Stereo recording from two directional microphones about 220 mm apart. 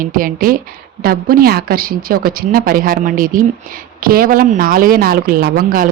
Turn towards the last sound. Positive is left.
turn(degrees=-40)  # may be behind; listen again after turning